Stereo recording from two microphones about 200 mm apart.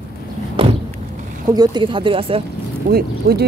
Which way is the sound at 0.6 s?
25° right (ahead or behind).